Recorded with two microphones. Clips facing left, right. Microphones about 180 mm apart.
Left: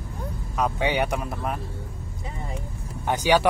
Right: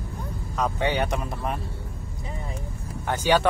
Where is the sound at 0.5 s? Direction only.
5° left (ahead or behind).